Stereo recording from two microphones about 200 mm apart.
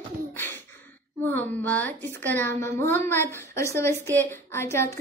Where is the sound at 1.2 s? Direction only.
10° left (ahead or behind).